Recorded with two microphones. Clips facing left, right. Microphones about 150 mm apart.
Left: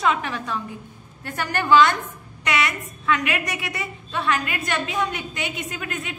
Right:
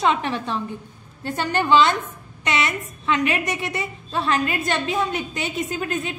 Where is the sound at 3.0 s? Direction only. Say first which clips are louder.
Right 2 dB; 25° right (ahead or behind).